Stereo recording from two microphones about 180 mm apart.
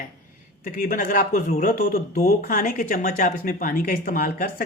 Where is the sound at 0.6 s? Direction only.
50° left (ahead or behind).